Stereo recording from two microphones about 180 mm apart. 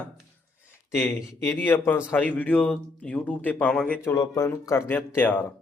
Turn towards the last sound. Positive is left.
turn(degrees=10)  # may be behind; listen again after turning